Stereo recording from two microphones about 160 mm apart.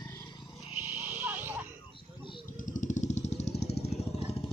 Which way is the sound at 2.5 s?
55° left (ahead or behind).